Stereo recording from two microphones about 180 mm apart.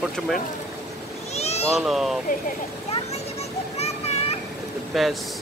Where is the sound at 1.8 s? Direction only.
Centre (ahead or behind).